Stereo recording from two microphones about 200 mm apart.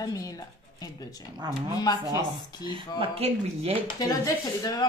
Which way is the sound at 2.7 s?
30° right (ahead or behind).